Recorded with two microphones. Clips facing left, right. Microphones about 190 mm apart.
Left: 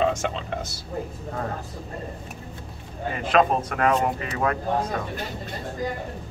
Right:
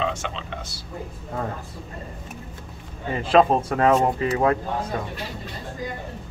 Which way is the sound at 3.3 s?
30° right (ahead or behind).